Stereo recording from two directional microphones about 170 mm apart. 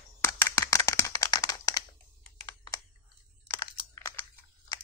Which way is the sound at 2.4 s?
20° left (ahead or behind).